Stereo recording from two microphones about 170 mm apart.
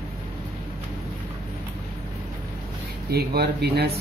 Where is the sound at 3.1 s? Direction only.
70° right (ahead or behind).